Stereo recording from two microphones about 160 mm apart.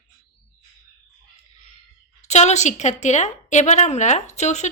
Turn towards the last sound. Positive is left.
turn(degrees=45)  # may be behind; listen again after turning